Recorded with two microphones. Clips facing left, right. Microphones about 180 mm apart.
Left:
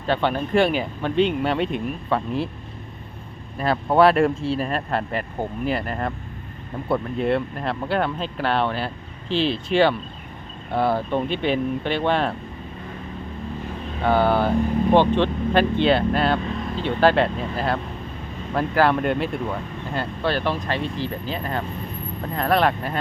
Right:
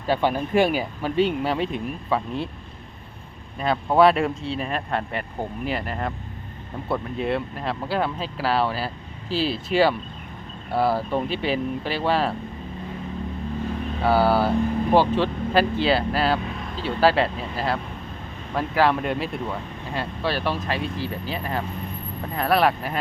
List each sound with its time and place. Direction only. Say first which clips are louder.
0.0 s speech: even; 10° right (ahead or behind)
3.6 s speech: left 1 dB; centre (ahead or behind)
14.0 s speech: even; 5° right (ahead or behind)